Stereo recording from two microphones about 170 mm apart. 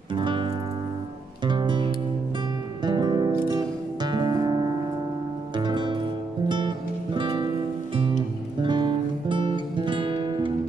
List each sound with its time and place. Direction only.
0.1 s music: 30° right (ahead or behind)